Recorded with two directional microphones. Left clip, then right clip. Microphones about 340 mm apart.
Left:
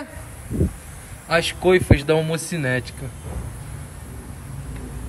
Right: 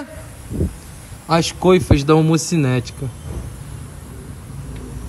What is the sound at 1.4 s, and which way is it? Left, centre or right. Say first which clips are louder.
A man's voice: right 2 dB; centre.